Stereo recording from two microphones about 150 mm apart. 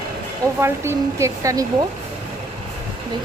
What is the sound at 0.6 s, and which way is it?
Speech, 20° right (ahead or behind).